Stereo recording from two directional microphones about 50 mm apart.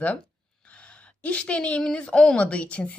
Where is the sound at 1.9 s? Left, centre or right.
Centre.